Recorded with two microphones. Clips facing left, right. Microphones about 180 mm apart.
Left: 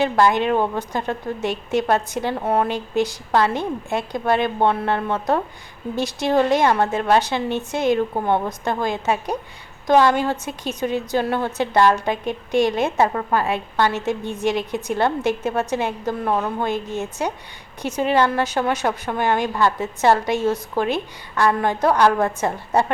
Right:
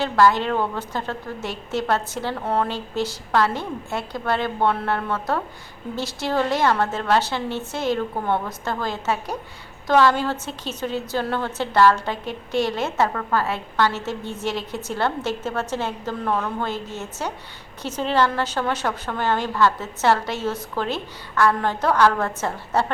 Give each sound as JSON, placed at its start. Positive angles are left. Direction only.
{"t": 0.0, "sound": "a woman's voice", "side_deg": 20}